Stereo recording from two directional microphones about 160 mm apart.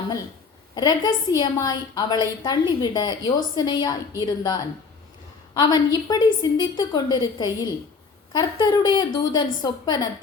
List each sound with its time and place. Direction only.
0.8 s a woman's voice: 25° left (ahead or behind)